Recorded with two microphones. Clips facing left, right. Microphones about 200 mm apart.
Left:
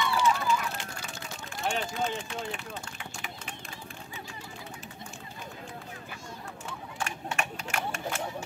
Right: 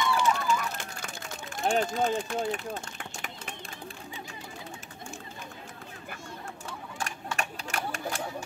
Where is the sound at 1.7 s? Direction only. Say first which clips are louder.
Right 5 dB; 45° right (ahead or behind).